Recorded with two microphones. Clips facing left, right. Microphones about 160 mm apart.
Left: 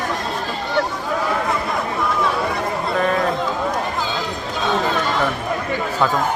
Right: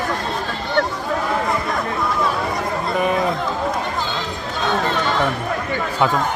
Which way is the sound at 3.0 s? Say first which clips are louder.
Even; 15° right (ahead or behind).